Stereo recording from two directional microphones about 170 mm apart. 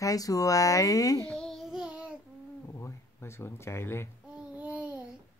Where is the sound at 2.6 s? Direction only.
15° left (ahead or behind).